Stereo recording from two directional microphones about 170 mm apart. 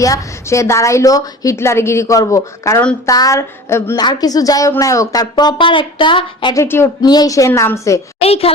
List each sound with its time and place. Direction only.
0.0 s a woman's voice: 20° left (ahead or behind)
6.6 s a woman's voice: 15° left (ahead or behind)
8.2 s a child's voice: 35° left (ahead or behind)